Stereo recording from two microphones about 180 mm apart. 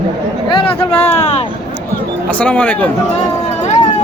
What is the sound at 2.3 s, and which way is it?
Speech, 5° left (ahead or behind).